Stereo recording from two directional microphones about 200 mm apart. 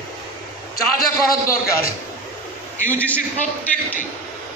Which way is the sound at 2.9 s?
5° left (ahead or behind).